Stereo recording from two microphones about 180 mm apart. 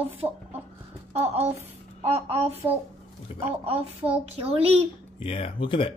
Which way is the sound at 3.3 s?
35° left (ahead or behind).